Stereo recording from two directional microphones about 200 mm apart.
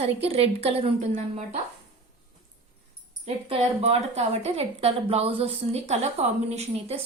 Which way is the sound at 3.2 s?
30° right (ahead or behind).